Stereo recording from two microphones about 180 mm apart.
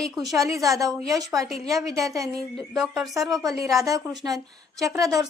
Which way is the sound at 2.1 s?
20° right (ahead or behind).